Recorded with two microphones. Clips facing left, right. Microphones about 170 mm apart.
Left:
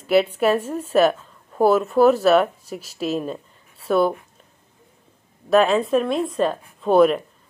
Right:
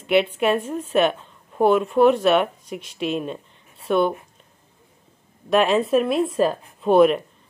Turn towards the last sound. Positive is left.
turn(degrees=0)  # may be behind; listen again after turning